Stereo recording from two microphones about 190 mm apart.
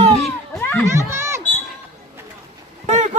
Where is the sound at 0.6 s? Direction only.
10° left (ahead or behind).